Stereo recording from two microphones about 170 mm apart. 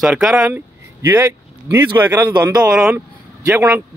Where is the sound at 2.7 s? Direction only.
5° right (ahead or behind).